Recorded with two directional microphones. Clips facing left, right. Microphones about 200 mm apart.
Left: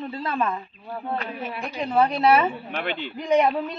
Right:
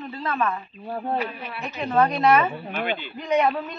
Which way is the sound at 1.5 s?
15° left (ahead or behind).